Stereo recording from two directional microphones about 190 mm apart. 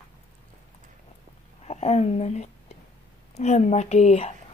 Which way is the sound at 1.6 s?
35° left (ahead or behind).